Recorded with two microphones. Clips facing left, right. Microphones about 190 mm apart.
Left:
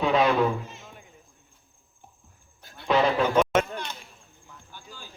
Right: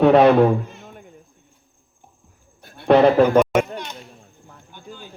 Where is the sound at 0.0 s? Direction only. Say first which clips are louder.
Right 9 dB; 60° right (ahead or behind).